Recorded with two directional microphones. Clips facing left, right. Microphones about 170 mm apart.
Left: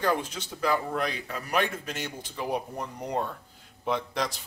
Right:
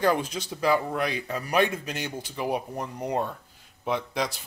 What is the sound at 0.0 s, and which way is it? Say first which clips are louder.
Speech: right 3 dB; 15° right (ahead or behind).